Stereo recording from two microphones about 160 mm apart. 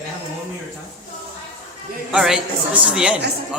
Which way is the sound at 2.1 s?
5° right (ahead or behind).